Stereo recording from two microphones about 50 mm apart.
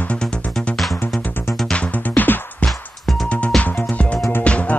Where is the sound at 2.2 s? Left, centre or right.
Left.